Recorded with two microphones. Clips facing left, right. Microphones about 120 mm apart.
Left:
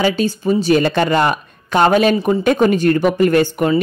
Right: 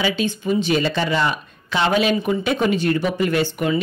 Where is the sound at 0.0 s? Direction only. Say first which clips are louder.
Left 5 dB; 40° left (ahead or behind).